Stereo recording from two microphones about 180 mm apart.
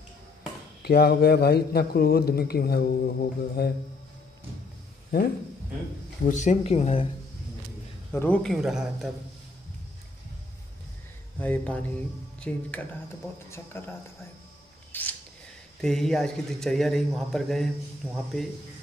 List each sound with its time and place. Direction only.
0.8 s a man's voice: 60° left (ahead or behind)
6.2 s speech: 40° left (ahead or behind)
8.1 s speech: 10° left (ahead or behind)
11.3 s speech: 10° left (ahead or behind)
14.9 s scissors: 10° left (ahead or behind)
15.8 s speech: centre (ahead or behind)